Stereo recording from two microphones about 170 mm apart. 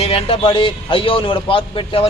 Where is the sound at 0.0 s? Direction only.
35° left (ahead or behind).